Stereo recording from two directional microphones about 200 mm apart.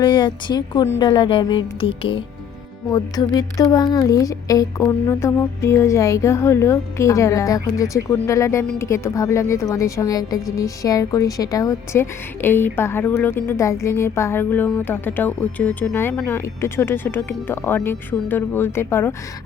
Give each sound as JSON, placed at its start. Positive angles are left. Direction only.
{"t": 0.0, "sound": "a woman's voice", "side_deg": 20}